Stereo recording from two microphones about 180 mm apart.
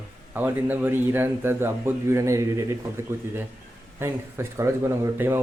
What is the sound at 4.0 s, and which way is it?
A man's voice, 15° right (ahead or behind).